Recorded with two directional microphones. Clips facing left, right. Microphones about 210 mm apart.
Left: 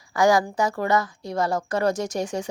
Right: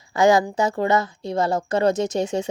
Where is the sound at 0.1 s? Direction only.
25° right (ahead or behind).